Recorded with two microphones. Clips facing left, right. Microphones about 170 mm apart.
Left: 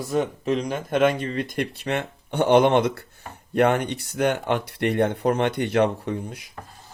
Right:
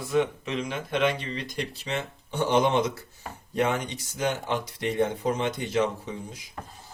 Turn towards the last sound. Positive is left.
turn(degrees=65)  # may be behind; listen again after turning